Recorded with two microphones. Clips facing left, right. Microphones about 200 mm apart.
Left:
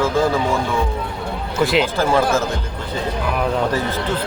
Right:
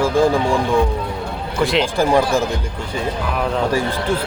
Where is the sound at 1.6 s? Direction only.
Centre (ahead or behind).